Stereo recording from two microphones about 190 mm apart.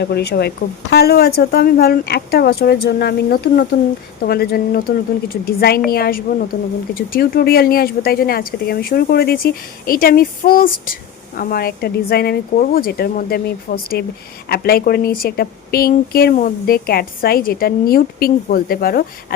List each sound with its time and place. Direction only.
0.0 s a woman's voice: 60° left (ahead or behind)